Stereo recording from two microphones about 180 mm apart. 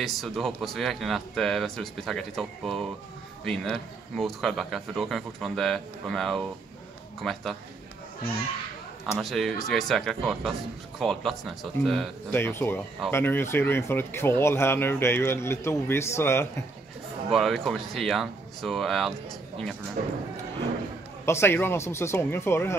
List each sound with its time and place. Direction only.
0.0 s speech: centre (ahead or behind)
9.2 s speech: centre (ahead or behind)
12.4 s speech: 10° left (ahead or behind)
17.3 s speech: centre (ahead or behind)
20.0 s speech: 45° right (ahead or behind)
21.3 s speech: 15° left (ahead or behind)